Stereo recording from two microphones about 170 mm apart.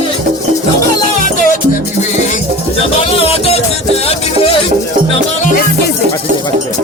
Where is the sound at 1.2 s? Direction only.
50° left (ahead or behind).